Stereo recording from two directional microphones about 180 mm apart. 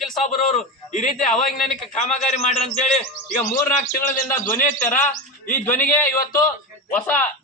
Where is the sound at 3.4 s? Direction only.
15° left (ahead or behind).